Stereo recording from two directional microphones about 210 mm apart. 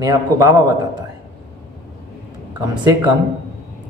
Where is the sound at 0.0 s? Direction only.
15° right (ahead or behind).